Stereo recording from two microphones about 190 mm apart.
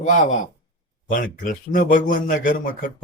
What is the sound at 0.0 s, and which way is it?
A man's voice, 40° left (ahead or behind).